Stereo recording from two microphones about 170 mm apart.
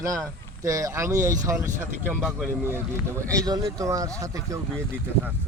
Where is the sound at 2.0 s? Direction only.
5° left (ahead or behind).